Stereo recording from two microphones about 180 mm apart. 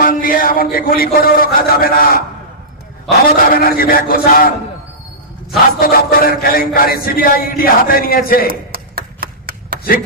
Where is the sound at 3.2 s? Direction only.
55° left (ahead or behind).